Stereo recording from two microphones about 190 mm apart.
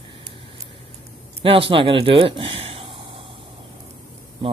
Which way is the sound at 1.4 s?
30° right (ahead or behind).